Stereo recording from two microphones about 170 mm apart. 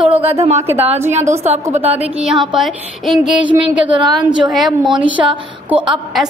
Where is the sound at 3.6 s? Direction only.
30° right (ahead or behind).